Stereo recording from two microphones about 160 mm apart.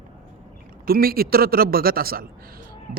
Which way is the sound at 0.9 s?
70° right (ahead or behind).